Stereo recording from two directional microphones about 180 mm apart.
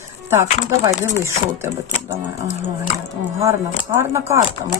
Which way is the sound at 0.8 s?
15° right (ahead or behind).